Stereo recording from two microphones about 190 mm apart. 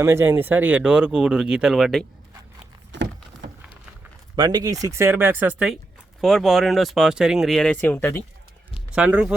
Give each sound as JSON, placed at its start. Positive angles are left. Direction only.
{"t": 0.0, "sound": "speech", "side_deg": -15}
{"t": 2.9, "sound": "vehicle", "side_deg": -65}
{"t": 4.4, "sound": "speech", "side_deg": -20}
{"t": 8.7, "sound": "a sound", "side_deg": -5}